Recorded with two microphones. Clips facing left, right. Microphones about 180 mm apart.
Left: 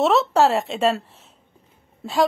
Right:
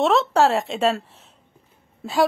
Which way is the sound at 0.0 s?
Centre (ahead or behind).